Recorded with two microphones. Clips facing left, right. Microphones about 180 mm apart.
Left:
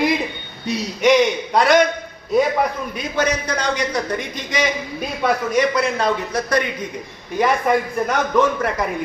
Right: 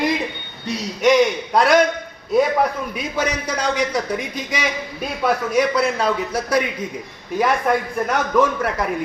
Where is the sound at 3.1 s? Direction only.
10° right (ahead or behind).